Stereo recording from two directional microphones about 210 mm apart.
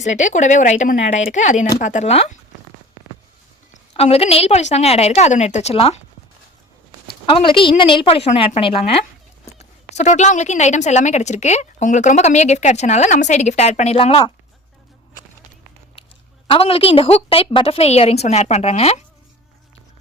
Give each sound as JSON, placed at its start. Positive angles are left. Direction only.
{"t": 0.0, "sound": "speech", "side_deg": 35}
{"t": 3.9, "sound": "speech", "side_deg": 30}
{"t": 7.3, "sound": "a woman's voice", "side_deg": 25}
{"t": 16.5, "sound": "a woman's voice", "side_deg": 25}